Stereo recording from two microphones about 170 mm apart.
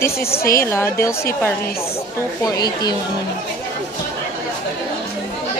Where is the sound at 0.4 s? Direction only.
15° left (ahead or behind).